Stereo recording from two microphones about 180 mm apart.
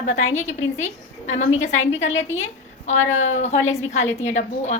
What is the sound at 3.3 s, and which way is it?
A woman's voice, 40° left (ahead or behind).